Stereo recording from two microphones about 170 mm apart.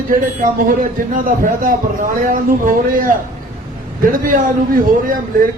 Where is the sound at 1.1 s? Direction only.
55° right (ahead or behind).